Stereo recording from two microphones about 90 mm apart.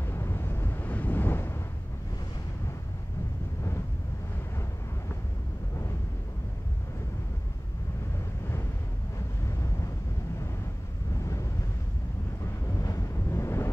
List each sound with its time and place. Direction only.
0.0 s vehicle: 30° left (ahead or behind)
11.1 s a sound: 35° left (ahead or behind)
12.6 s vehicle: 40° left (ahead or behind)